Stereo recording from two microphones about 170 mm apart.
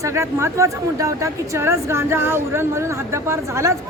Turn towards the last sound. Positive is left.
turn(degrees=-15)  # may be behind; listen again after turning